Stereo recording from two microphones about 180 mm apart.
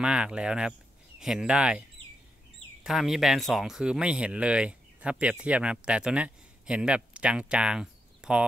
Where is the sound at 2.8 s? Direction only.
Centre (ahead or behind).